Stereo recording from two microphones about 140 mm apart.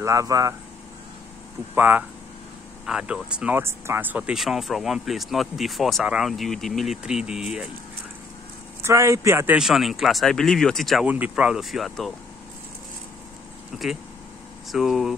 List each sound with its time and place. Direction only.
0.0 s a man's voice: 25° right (ahead or behind)
1.8 s speech: 15° right (ahead or behind)
8.8 s a man's voice: 20° right (ahead or behind)
9.6 s speech: centre (ahead or behind)
11.1 s speech: 10° right (ahead or behind)
14.7 s speech: centre (ahead or behind)